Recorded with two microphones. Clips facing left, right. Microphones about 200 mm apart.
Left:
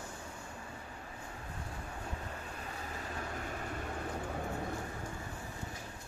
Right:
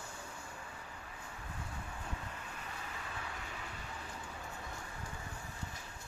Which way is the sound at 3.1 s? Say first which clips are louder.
Left 6 dB; 45° left (ahead or behind).